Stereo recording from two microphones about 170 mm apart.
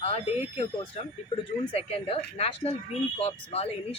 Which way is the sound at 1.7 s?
35° left (ahead or behind).